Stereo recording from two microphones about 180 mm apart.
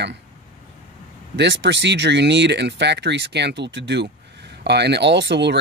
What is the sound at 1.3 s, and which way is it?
Speech, 75° right (ahead or behind).